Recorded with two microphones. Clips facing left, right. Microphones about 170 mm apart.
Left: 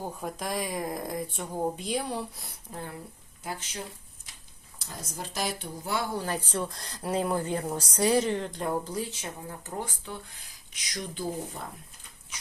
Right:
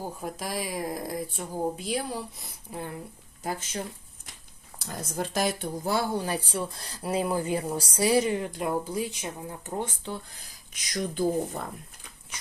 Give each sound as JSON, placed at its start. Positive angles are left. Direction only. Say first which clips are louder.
{"t": 0.0, "sound": "speech", "louder": "even", "side_deg": -5}
{"t": 3.4, "sound": "speech", "louder": "right 4 dB", "side_deg": -45}
{"t": 4.7, "sound": "a sound", "louder": "right 8 dB", "side_deg": -55}
{"t": 5.1, "sound": "speech", "louder": "right 5 dB", "side_deg": -55}
{"t": 6.1, "sound": "a woman's voice", "louder": "right 1 dB", "side_deg": -10}
{"t": 10.9, "sound": "speech", "louder": "right 7 dB", "side_deg": -50}